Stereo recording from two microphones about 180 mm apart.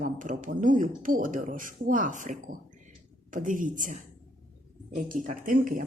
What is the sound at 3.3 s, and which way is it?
Speech, 45° right (ahead or behind).